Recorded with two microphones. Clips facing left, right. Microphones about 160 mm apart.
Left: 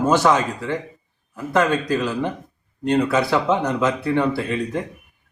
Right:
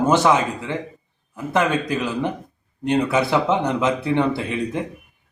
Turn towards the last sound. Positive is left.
turn(degrees=-20)  # may be behind; listen again after turning